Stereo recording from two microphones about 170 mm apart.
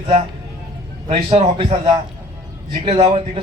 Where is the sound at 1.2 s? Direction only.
35° right (ahead or behind).